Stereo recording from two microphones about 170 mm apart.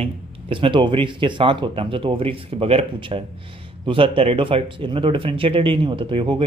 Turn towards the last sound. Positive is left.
turn(degrees=-30)  # may be behind; listen again after turning